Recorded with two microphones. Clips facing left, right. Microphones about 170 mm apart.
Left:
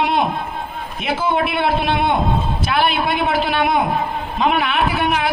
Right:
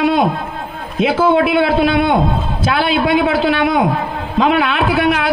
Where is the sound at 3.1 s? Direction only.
90° right.